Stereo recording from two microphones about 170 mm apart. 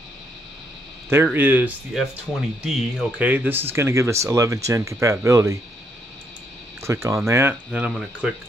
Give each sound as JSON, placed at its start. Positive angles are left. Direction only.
{"t": 1.1, "sound": "speech", "side_deg": -15}
{"t": 6.8, "sound": "speech", "side_deg": -15}